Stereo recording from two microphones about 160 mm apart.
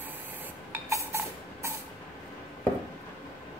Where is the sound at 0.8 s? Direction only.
15° right (ahead or behind).